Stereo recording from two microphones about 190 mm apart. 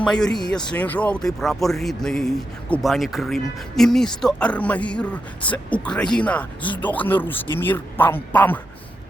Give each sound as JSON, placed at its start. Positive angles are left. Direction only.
{"t": 0.0, "sound": "speech", "side_deg": 5}